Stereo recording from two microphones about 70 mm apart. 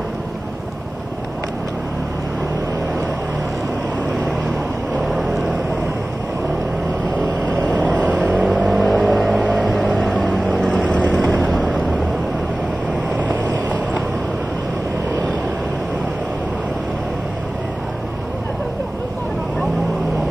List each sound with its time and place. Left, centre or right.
5.0 s vehicle: centre
7.7 s vehicle: right
8.6 s vehicle: centre
10.5 s vehicle: centre
11.3 s vehicle: centre
13.2 s vehicle: right